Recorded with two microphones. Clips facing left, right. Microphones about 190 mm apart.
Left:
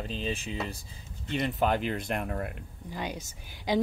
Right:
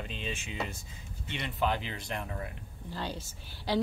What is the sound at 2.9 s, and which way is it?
Speech, 15° left (ahead or behind).